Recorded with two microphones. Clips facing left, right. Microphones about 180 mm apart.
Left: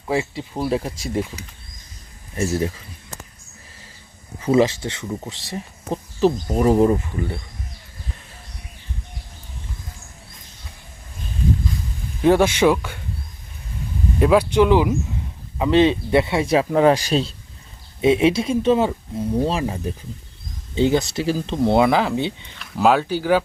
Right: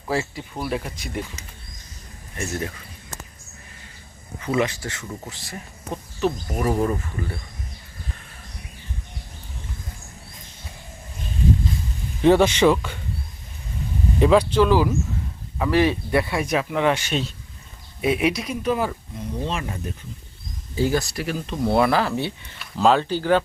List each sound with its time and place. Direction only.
0.1 s speech: 20° left (ahead or behind)
4.4 s speech: 30° left (ahead or behind)
12.2 s speech: 10° left (ahead or behind)
14.2 s speech: 5° left (ahead or behind)
14.6 s speech: 20° left (ahead or behind); by 19.7 s 35° left (ahead or behind)
20.7 s speech: 20° left (ahead or behind)